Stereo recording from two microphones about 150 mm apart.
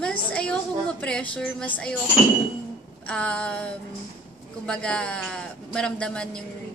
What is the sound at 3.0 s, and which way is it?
A woman's voice, 5° left (ahead or behind).